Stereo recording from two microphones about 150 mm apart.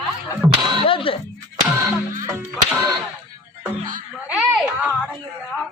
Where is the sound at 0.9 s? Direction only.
35° left (ahead or behind).